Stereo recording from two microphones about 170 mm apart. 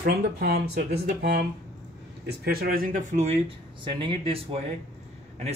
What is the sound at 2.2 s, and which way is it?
Speech, 65° right (ahead or behind).